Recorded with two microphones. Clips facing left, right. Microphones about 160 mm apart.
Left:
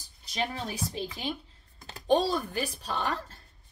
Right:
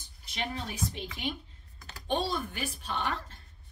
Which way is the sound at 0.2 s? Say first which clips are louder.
Left 3 dB; 35° left (ahead or behind).